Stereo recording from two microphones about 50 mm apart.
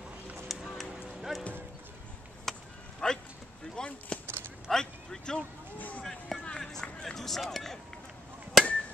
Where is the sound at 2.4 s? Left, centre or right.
Centre.